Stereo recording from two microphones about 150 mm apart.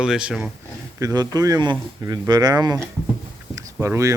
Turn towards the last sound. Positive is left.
turn(degrees=-20)  # may be behind; listen again after turning